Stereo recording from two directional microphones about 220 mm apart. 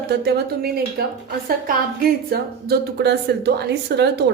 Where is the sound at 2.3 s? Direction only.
45° right (ahead or behind).